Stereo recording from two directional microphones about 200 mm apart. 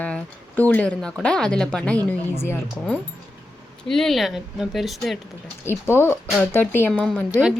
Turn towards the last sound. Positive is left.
turn(degrees=-5)  # may be behind; listen again after turning